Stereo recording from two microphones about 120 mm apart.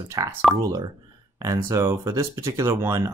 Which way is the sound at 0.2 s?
30° right (ahead or behind).